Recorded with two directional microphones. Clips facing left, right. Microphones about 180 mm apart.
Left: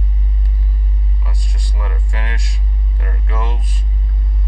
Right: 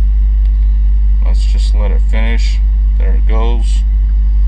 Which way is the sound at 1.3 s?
25° right (ahead or behind).